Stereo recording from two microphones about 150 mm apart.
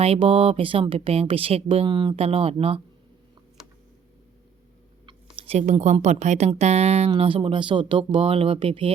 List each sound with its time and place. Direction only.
0.0 s speech: 40° right (ahead or behind)
5.0 s a sound: 35° right (ahead or behind)
5.5 s a woman's voice: 50° right (ahead or behind)